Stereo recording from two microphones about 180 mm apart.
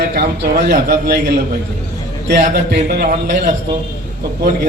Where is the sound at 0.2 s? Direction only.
55° right (ahead or behind).